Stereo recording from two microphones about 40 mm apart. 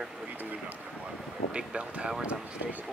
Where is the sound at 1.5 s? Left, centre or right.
Right.